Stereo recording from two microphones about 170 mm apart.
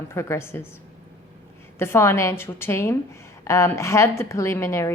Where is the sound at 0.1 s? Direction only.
15° left (ahead or behind).